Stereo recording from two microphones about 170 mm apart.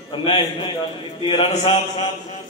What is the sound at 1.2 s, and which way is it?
Speech, 35° left (ahead or behind).